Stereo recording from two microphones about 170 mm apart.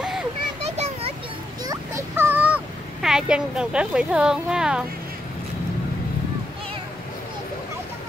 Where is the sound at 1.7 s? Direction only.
15° right (ahead or behind).